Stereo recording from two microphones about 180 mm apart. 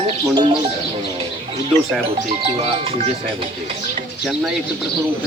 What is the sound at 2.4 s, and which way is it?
Speech, 35° right (ahead or behind).